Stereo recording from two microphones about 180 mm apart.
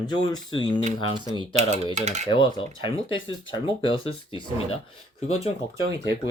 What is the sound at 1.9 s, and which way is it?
Cutlery, 40° right (ahead or behind).